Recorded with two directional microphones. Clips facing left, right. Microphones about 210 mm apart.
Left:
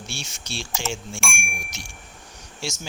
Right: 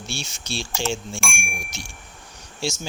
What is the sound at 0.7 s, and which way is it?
Speech, centre (ahead or behind).